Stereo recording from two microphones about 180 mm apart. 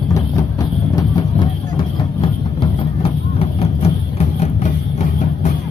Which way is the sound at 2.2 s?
30° left (ahead or behind).